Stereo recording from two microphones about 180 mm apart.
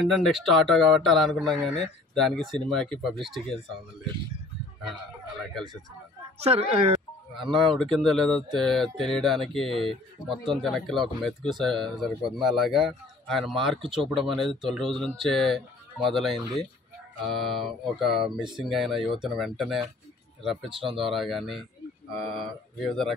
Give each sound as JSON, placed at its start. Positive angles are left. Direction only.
{"t": 0.0, "sound": "speech", "side_deg": 0}
{"t": 6.4, "sound": "speech", "side_deg": -35}
{"t": 7.5, "sound": "speech", "side_deg": 0}